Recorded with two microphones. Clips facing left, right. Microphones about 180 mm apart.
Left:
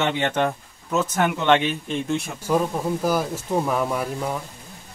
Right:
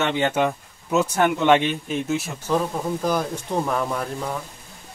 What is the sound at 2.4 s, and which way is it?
Speech, 10° left (ahead or behind).